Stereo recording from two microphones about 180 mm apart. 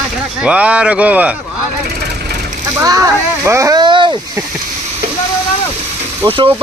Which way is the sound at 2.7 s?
20° right (ahead or behind).